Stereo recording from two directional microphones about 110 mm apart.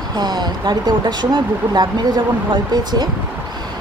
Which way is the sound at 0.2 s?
40° right (ahead or behind).